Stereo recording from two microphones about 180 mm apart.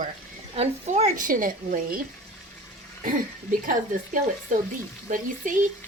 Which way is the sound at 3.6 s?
50° right (ahead or behind).